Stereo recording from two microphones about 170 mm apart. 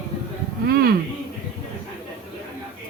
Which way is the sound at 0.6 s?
70° right (ahead or behind).